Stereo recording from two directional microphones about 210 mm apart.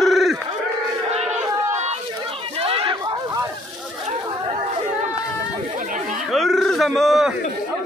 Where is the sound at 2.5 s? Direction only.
25° right (ahead or behind).